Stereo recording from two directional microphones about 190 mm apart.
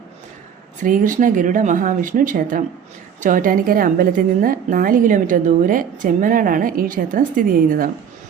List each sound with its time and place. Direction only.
0.8 s a woman's voice: 45° right (ahead or behind)